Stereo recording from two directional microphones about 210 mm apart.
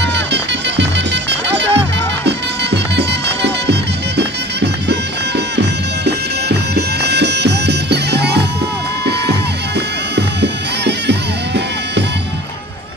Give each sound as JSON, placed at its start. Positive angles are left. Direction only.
{"t": 0.0, "sound": "music", "side_deg": -55}
{"t": 4.2, "sound": "bagpipes", "side_deg": -55}
{"t": 6.7, "sound": "music", "side_deg": -50}